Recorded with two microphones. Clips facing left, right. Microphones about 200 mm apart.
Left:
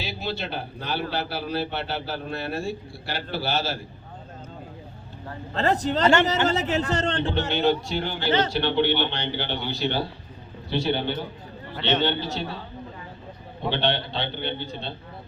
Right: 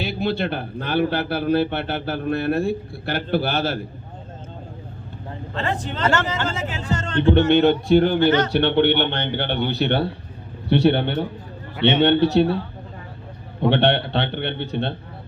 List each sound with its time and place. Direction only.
0.0 s a man's voice: 55° right (ahead or behind)
5.5 s a man's voice: 40° left (ahead or behind)
7.2 s a man's voice: 60° right (ahead or behind)
13.6 s a man's voice: 65° right (ahead or behind)